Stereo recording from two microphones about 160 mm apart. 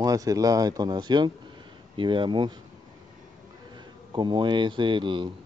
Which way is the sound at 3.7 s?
30° right (ahead or behind).